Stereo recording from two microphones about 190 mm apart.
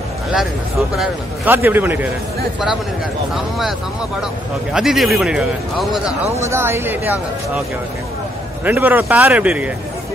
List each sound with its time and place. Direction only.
0.3 s speech: centre (ahead or behind)
4.7 s a man's voice: centre (ahead or behind)
6.3 s speech: 15° right (ahead or behind)
8.6 s speech: 10° right (ahead or behind)